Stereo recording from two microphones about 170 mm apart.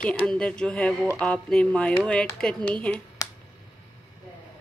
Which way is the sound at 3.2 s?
20° left (ahead or behind).